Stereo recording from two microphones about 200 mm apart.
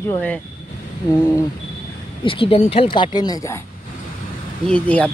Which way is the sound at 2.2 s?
25° left (ahead or behind).